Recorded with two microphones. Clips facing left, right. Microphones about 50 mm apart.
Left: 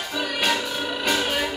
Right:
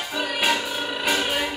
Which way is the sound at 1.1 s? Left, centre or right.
Centre.